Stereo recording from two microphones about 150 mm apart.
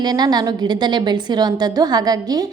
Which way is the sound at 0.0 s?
30° right (ahead or behind).